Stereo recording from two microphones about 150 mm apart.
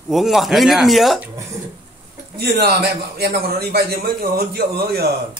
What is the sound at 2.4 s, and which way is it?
A man's voice, 90° right.